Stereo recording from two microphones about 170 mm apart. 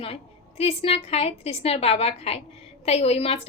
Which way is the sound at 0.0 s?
35° left (ahead or behind).